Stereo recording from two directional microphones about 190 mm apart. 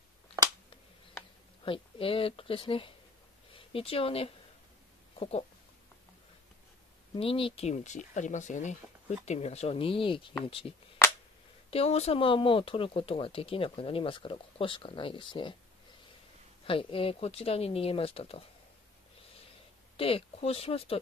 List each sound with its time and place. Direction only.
0.4 s finger snapping: 20° right (ahead or behind)
1.6 s speech: 30° left (ahead or behind)
7.2 s speech: 30° left (ahead or behind)
11.7 s speech: 35° left (ahead or behind)
16.6 s speech: 30° left (ahead or behind)
20.0 s speech: 30° left (ahead or behind)